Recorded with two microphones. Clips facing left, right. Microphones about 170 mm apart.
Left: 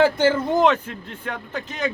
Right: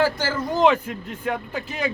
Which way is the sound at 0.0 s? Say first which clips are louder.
Left 5 dB; 20° left (ahead or behind).